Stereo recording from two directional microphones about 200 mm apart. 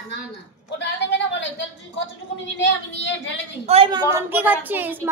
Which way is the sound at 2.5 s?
65° left (ahead or behind).